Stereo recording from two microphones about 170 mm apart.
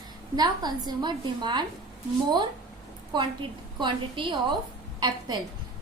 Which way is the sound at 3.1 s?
25° right (ahead or behind).